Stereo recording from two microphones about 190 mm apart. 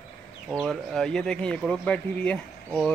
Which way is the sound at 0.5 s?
Centre (ahead or behind).